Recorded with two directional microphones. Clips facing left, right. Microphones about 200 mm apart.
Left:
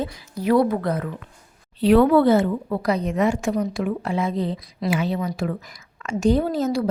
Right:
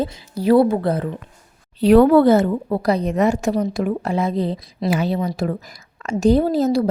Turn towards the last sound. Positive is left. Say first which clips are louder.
# right 4 dB
turn(degrees=-35)  # may be behind; listen again after turning